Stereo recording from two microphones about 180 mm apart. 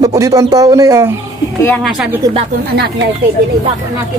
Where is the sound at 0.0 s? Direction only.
20° right (ahead or behind).